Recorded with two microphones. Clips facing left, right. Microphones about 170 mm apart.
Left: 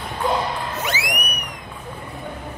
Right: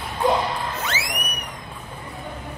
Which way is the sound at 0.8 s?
15° left (ahead or behind).